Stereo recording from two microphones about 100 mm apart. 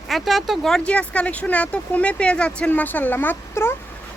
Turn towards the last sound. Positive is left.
turn(degrees=25)  # may be behind; listen again after turning